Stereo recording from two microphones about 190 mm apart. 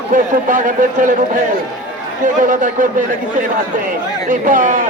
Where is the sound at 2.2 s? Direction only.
40° right (ahead or behind).